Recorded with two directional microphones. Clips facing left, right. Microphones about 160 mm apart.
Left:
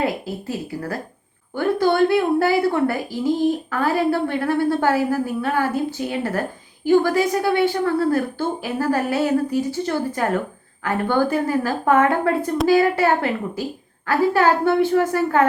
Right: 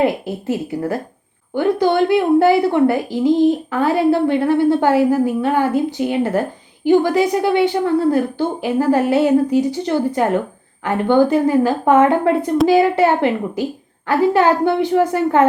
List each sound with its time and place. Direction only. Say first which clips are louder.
0.0 s a woman's voice: right 6 dB; 20° right (ahead or behind)